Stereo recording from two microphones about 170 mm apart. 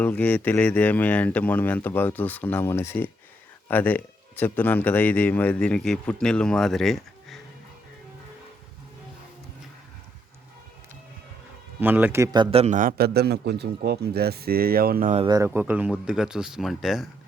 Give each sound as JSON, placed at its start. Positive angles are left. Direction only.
{"t": 0.0, "sound": "speech", "side_deg": 10}
{"t": 11.8, "sound": "a man's voice", "side_deg": -10}
{"t": 13.0, "sound": "speech", "side_deg": -70}
{"t": 15.3, "sound": "speech", "side_deg": -15}